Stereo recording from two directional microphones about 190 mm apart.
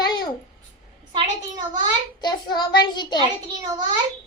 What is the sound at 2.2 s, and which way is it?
Speech, 20° left (ahead or behind).